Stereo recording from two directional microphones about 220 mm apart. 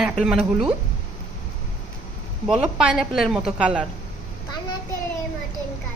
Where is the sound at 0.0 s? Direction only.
5° right (ahead or behind).